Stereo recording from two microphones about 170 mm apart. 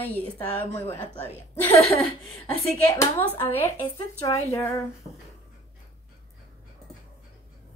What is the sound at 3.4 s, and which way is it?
Speech, 10° left (ahead or behind).